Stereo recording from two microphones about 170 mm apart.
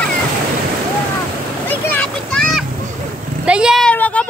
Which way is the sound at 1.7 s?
10° left (ahead or behind).